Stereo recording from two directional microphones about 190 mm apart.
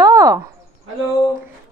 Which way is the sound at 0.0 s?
20° right (ahead or behind).